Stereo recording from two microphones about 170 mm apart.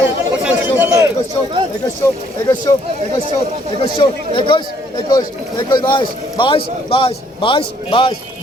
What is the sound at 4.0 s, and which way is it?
Speech, 30° left (ahead or behind).